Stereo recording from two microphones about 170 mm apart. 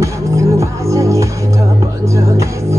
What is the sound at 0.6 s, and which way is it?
Music, 20° right (ahead or behind).